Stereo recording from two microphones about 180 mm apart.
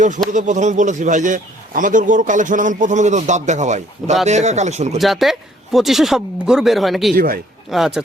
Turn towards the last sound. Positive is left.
turn(degrees=0)  # may be behind; listen again after turning